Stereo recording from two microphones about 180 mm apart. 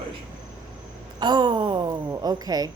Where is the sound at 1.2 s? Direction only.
25° right (ahead or behind).